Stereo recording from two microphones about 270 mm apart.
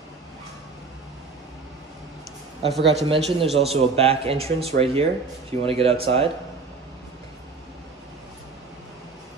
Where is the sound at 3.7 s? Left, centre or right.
Right.